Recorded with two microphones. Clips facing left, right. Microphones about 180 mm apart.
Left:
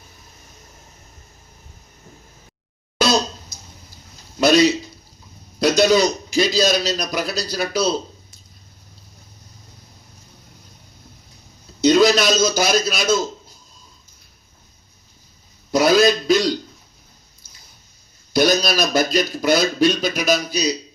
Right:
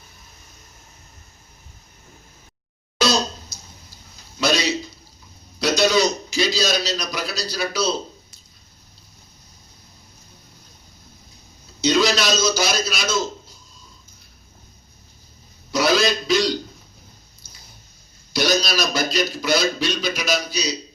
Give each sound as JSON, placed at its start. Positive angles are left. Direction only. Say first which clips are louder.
{"t": 4.4, "sound": "a man's voice", "louder": "left 7 dB", "side_deg": 50}
{"t": 11.8, "sound": "a man's voice", "louder": "left 5 dB", "side_deg": 50}
{"t": 15.7, "sound": "a man's voice", "louder": "left 5 dB", "side_deg": 50}
{"t": 18.3, "sound": "a man's voice", "louder": "left 4 dB", "side_deg": 55}